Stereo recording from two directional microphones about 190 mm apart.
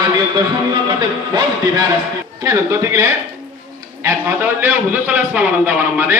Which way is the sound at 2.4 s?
15° right (ahead or behind).